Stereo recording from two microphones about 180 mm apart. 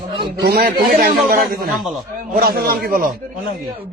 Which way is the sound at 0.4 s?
55° right (ahead or behind).